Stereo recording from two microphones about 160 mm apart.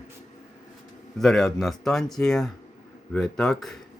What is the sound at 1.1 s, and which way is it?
Speech, centre (ahead or behind).